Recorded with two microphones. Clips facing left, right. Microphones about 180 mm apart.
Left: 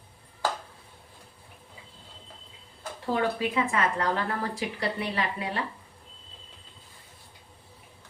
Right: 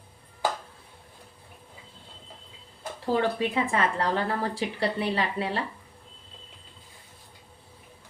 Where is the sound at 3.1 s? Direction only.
30° right (ahead or behind).